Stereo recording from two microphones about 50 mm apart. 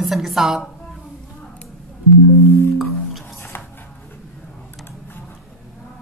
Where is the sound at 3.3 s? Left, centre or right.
Left.